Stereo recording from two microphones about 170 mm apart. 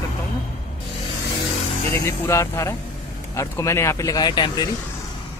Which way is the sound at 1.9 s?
15° left (ahead or behind).